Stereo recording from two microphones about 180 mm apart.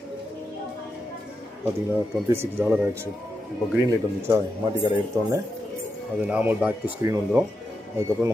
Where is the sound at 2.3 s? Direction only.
15° right (ahead or behind).